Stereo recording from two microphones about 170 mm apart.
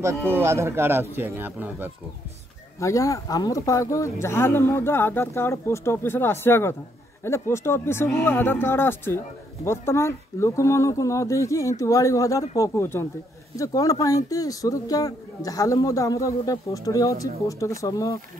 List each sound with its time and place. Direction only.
0.0 s speech: 15° right (ahead or behind)
2.8 s speech: 20° left (ahead or behind)